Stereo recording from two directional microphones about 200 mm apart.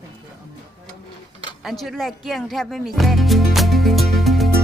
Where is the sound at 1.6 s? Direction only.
Centre (ahead or behind).